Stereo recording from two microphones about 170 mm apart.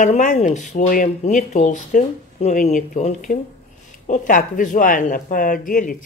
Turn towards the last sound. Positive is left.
turn(degrees=55)  # may be behind; listen again after turning